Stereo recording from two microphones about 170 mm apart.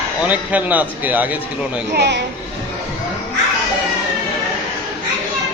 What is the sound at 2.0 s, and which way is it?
Speech, 85° right.